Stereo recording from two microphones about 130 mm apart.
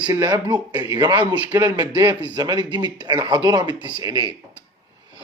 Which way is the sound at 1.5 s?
20° right (ahead or behind).